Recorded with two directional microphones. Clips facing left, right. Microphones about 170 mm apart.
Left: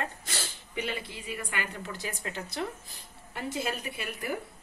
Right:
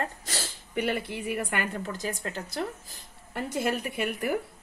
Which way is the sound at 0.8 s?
60° right (ahead or behind).